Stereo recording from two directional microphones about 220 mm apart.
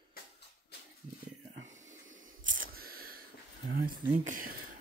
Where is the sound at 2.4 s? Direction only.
40° right (ahead or behind).